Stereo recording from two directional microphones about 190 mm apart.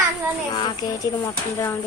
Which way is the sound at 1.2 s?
15° left (ahead or behind).